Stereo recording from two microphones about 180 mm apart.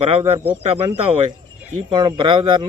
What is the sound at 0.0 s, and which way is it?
Speech, 35° right (ahead or behind).